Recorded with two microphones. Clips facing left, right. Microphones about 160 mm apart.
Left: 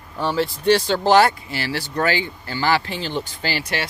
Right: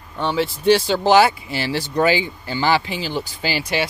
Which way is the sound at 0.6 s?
10° right (ahead or behind).